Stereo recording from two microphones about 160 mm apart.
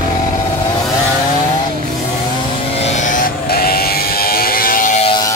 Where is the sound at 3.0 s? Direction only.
55° left (ahead or behind).